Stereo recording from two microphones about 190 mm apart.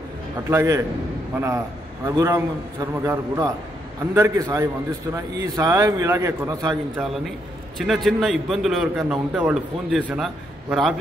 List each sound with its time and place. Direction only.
0.5 s a man's voice: 15° right (ahead or behind)
2.0 s a man's voice: 15° right (ahead or behind)
7.8 s a man's voice: centre (ahead or behind)